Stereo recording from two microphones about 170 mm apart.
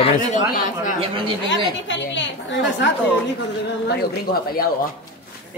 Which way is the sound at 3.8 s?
65° left (ahead or behind).